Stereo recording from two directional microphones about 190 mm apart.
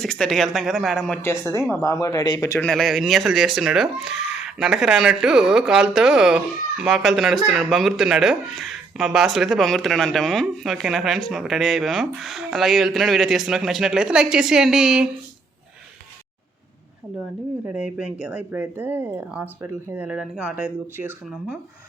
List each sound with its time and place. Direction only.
0.0 s speech: 5° left (ahead or behind)
1.7 s speech: 15° left (ahead or behind)
2.6 s speech: centre (ahead or behind)
17.7 s speech: 5° right (ahead or behind)